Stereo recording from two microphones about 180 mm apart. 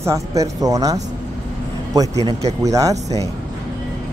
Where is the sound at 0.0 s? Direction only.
20° right (ahead or behind).